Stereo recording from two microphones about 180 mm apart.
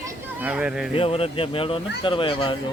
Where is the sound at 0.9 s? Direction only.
30° left (ahead or behind).